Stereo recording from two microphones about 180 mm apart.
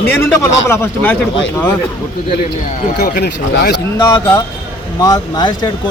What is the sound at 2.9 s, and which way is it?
Speech, 60° left (ahead or behind).